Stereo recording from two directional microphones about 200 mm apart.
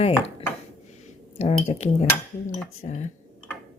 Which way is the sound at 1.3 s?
35° left (ahead or behind).